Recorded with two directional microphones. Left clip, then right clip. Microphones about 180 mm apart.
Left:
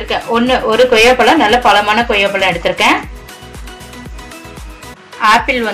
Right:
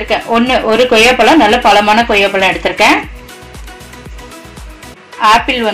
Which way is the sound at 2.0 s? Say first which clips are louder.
Right 2 dB; 30° right (ahead or behind).